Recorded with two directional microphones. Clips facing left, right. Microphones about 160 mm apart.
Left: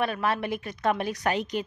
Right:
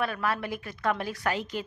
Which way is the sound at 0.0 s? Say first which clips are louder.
Left 3 dB; 20° left (ahead or behind).